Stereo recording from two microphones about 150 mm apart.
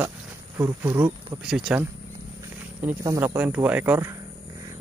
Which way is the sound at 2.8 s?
15° right (ahead or behind).